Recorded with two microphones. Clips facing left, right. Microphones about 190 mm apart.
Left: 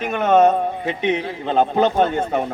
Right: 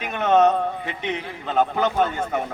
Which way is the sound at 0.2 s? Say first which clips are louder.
Left 3 dB; 10° left (ahead or behind).